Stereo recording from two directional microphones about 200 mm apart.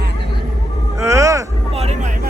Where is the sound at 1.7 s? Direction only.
30° right (ahead or behind).